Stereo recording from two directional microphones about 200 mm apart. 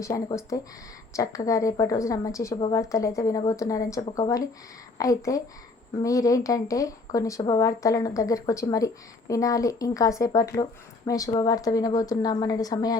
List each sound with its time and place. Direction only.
0.0 s speech: 15° left (ahead or behind)